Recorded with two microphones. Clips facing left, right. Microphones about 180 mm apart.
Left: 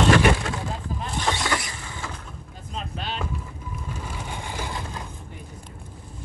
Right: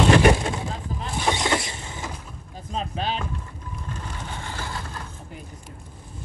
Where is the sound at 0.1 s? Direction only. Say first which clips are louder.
Right 2 dB; 25° right (ahead or behind).